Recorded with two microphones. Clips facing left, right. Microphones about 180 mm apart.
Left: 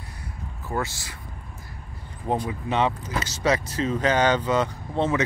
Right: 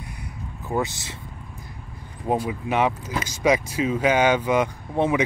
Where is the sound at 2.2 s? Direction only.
10° right (ahead or behind).